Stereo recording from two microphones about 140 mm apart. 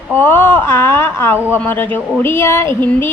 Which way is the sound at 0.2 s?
15° left (ahead or behind).